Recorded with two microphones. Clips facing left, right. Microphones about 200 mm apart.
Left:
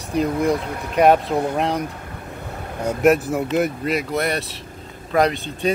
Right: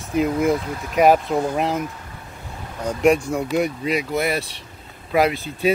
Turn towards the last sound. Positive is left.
turn(degrees=0)  # may be behind; listen again after turning